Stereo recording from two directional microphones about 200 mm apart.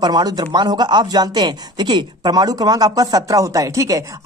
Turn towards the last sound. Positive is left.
turn(degrees=-15)  # may be behind; listen again after turning